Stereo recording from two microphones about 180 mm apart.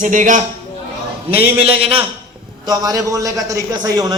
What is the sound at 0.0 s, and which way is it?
Speech, 45° right (ahead or behind).